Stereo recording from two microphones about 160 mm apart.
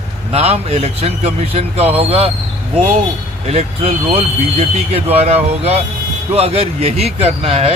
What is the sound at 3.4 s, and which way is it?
Speech, 40° right (ahead or behind).